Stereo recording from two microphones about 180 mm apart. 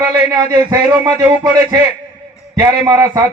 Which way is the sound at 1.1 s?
20° right (ahead or behind).